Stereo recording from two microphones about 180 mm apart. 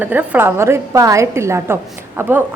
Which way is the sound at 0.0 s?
10° right (ahead or behind).